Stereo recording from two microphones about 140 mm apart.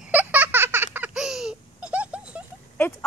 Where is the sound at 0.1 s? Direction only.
10° right (ahead or behind).